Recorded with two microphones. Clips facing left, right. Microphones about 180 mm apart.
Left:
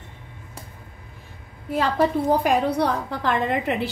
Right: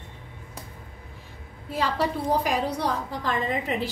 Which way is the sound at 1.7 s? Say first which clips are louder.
Left 5 dB; 50° left (ahead or behind).